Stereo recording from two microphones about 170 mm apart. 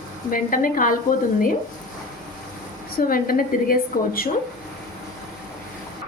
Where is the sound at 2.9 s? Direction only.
55° left (ahead or behind).